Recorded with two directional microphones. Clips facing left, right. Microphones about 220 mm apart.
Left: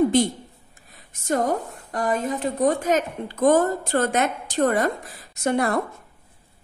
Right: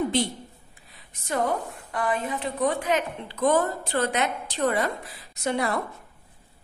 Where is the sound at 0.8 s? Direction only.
45° left (ahead or behind).